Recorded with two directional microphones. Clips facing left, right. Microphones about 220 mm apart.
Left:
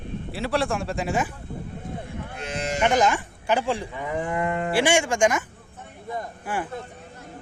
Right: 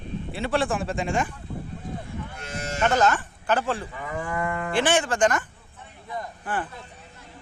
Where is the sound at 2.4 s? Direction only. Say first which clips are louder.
Left 2 dB; 15° left (ahead or behind).